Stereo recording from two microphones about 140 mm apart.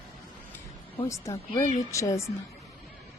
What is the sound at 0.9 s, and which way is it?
A woman's voice, 20° left (ahead or behind).